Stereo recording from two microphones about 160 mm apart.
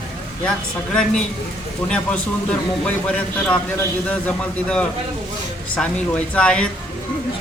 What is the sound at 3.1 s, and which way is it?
A man's voice, 10° left (ahead or behind).